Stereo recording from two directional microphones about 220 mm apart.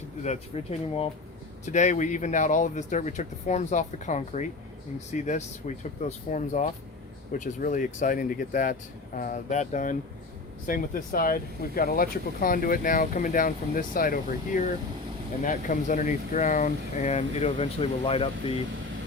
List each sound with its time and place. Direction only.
0.2 s speech: 30° left (ahead or behind)